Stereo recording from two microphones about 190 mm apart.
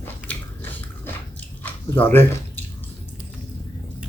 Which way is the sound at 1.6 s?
10° left (ahead or behind).